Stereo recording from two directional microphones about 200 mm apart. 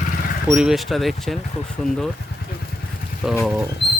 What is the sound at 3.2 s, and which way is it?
Speech, 5° right (ahead or behind).